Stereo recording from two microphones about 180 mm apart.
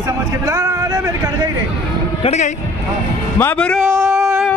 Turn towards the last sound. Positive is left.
turn(degrees=5)  # may be behind; listen again after turning